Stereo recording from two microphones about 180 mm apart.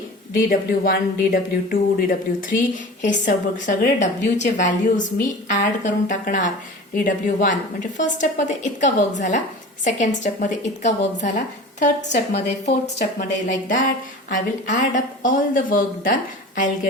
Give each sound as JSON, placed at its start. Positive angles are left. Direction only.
{"t": 0.9, "sound": "a woman's voice", "side_deg": 55}